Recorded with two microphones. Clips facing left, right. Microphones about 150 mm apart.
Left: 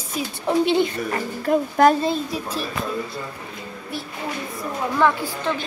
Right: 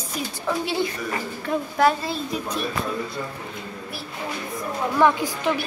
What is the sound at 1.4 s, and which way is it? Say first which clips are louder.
Speech: left 4 dB; 45° left (ahead or behind).